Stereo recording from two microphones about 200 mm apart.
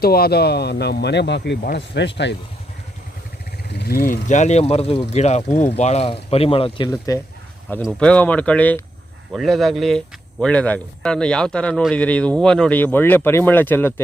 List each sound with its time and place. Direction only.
0.0 s speech: 50° left (ahead or behind)
3.7 s speech: 50° left (ahead or behind); by 7.2 s 15° left (ahead or behind)
7.9 s speech: 5° left (ahead or behind)